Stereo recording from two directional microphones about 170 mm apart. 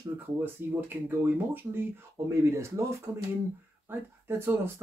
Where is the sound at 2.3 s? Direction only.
15° right (ahead or behind).